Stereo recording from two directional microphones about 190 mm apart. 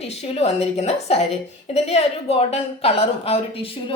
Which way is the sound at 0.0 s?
35° left (ahead or behind).